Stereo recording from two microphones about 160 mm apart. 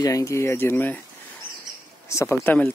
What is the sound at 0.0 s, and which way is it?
Speech, 20° left (ahead or behind).